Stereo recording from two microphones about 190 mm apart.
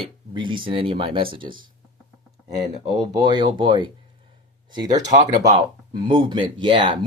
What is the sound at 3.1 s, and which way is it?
Speech, 25° right (ahead or behind).